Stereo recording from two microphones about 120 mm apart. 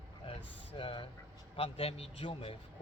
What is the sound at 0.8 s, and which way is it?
A man's voice, 50° left (ahead or behind).